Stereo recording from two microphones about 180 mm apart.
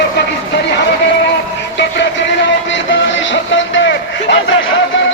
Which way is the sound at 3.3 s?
90° left.